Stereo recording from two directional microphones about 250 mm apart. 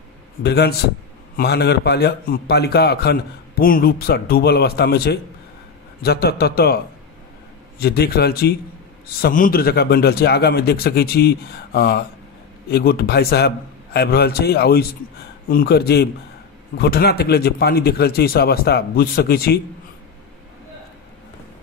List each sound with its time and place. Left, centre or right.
0.4 s a man's voice: left
7.8 s a man's voice: left